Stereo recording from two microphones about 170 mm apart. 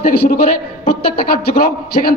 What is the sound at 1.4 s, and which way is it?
Speech, 65° left (ahead or behind).